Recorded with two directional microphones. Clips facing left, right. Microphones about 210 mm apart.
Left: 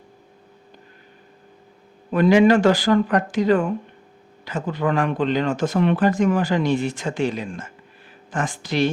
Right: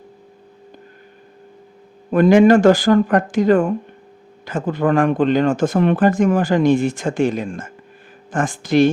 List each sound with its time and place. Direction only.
2.0 s speech: 50° right (ahead or behind)